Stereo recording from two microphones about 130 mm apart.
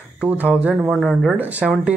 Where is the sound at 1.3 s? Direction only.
10° right (ahead or behind).